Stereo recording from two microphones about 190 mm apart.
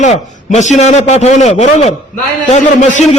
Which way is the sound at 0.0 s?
40° left (ahead or behind).